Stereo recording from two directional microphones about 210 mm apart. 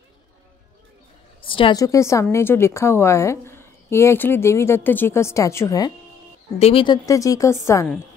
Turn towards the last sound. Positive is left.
turn(degrees=10)  # may be behind; listen again after turning